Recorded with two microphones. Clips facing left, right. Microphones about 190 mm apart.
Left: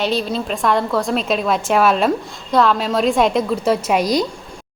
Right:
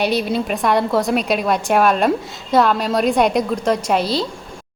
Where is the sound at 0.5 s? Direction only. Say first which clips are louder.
Even; 5° right (ahead or behind); by 4.3 s 15° left (ahead or behind).